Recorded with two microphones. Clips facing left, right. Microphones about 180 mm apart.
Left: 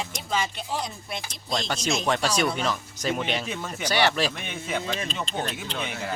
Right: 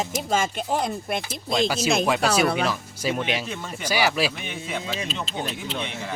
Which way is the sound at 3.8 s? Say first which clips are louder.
Right 1 dB; 10° right (ahead or behind).